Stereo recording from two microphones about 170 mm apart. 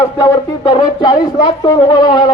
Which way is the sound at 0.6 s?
25° left (ahead or behind).